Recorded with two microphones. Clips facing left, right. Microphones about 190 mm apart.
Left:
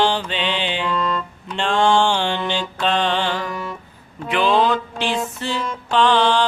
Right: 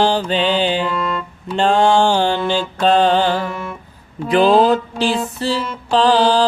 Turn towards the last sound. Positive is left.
turn(degrees=-35)  # may be behind; listen again after turning